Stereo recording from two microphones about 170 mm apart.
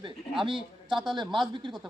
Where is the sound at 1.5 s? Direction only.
30° right (ahead or behind).